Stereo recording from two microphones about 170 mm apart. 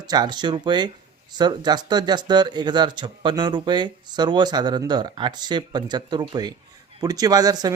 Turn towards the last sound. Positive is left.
turn(degrees=-25)  # may be behind; listen again after turning